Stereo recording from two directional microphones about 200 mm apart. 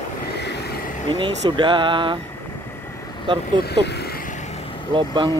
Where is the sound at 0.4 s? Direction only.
55° left (ahead or behind).